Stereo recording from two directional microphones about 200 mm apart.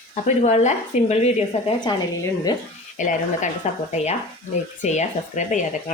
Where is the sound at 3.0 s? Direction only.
40° left (ahead or behind).